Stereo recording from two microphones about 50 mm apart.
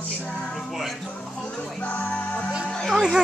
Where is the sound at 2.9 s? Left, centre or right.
Centre.